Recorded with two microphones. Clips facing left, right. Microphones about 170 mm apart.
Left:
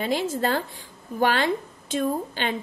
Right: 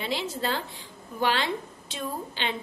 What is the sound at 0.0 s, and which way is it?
A woman's voice, 45° left (ahead or behind).